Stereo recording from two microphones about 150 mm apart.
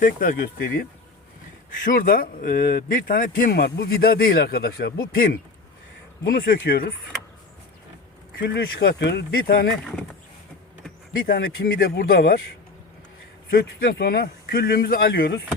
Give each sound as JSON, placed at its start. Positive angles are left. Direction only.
{"t": 0.0, "sound": "speech", "side_deg": 70}
{"t": 1.8, "sound": "speech", "side_deg": 65}
{"t": 8.4, "sound": "speech", "side_deg": 90}
{"t": 11.2, "sound": "speech", "side_deg": 90}
{"t": 13.5, "sound": "speech", "side_deg": 85}